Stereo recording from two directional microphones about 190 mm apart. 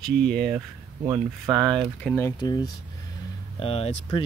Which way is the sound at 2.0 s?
10° left (ahead or behind).